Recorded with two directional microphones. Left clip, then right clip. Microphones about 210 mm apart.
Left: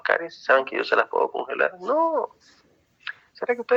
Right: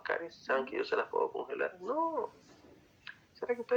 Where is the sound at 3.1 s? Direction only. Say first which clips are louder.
Left 10 dB; 40° left (ahead or behind).